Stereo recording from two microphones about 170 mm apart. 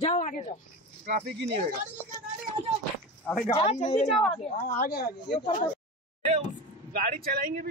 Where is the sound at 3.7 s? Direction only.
40° left (ahead or behind).